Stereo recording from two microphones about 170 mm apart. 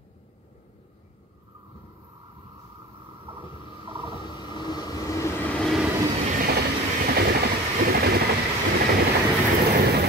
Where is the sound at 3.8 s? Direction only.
30° right (ahead or behind).